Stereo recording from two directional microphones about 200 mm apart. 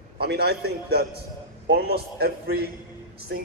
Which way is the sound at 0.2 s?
55° right (ahead or behind).